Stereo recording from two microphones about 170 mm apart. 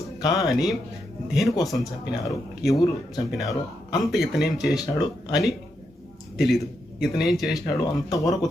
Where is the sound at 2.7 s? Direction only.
20° left (ahead or behind).